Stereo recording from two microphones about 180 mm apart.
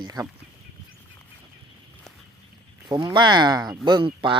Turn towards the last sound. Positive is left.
turn(degrees=-30)  # may be behind; listen again after turning